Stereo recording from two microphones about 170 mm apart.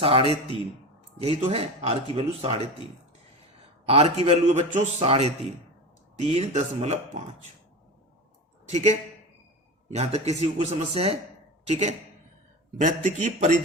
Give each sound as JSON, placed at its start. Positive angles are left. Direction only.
{"t": 0.0, "sound": "speech", "side_deg": -35}
{"t": 3.8, "sound": "speech", "side_deg": -40}
{"t": 8.7, "sound": "a man's voice", "side_deg": -45}